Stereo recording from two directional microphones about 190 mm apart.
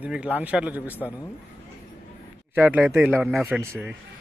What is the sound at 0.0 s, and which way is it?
Speech, 5° right (ahead or behind).